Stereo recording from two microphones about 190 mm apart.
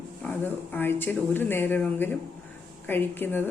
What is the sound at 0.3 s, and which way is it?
A woman's voice, 10° left (ahead or behind).